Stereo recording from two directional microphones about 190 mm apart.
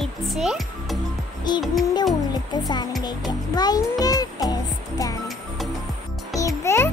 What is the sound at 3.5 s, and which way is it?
Music, 20° left (ahead or behind).